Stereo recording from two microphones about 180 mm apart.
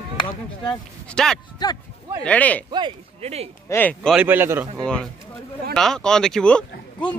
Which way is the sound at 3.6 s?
10° left (ahead or behind).